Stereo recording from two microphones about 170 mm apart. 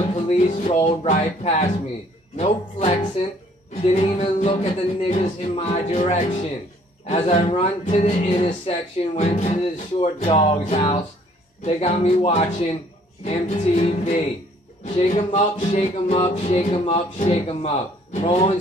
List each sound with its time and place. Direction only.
0.1 s music: 45° left (ahead or behind)
1.1 s speech: 40° left (ahead or behind)
2.3 s music: 40° left (ahead or behind)